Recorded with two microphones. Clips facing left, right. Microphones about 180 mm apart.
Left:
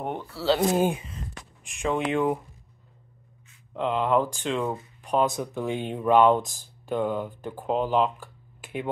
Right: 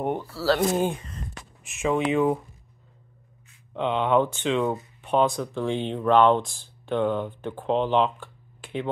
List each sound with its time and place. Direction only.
0.0 s speech: 5° right (ahead or behind)
0.6 s speech: 10° left (ahead or behind)
3.7 s speech: 5° left (ahead or behind)